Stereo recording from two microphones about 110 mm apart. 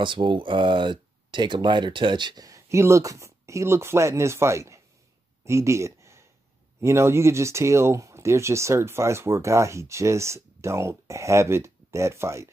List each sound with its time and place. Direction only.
0.0 s speech: 45° right (ahead or behind); by 4.8 s 25° right (ahead or behind)
5.4 s a sound: 25° right (ahead or behind)
6.8 s speech: 25° right (ahead or behind)